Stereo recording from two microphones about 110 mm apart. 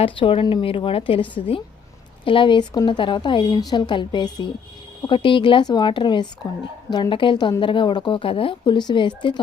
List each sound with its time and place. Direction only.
0.0 s a woman's voice: 55° left (ahead or behind)